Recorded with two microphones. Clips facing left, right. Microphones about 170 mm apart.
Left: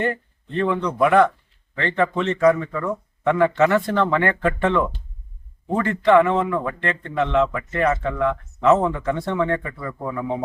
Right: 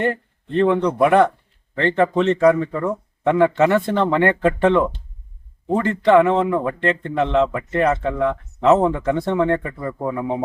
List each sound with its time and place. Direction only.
0.0 s speech: 40° right (ahead or behind)
10.0 s speech: 15° right (ahead or behind)